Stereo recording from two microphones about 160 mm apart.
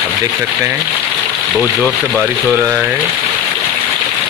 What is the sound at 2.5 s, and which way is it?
Speech, 15° right (ahead or behind).